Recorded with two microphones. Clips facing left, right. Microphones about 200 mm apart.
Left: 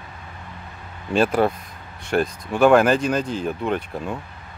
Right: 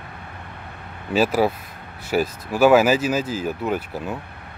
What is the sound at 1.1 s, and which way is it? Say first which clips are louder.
Speech: even; 5° right (ahead or behind).